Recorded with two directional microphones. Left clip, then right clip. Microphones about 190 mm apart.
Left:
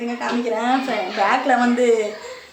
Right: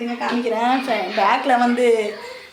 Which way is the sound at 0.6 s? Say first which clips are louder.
Right 2 dB; 5° right (ahead or behind).